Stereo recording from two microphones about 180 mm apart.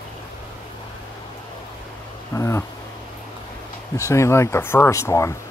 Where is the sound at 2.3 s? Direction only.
15° left (ahead or behind).